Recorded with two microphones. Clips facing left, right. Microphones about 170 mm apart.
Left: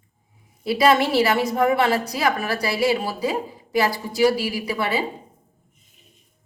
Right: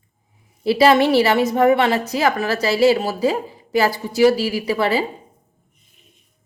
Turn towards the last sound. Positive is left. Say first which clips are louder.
# right 5 dB
turn(degrees=-30)  # may be behind; listen again after turning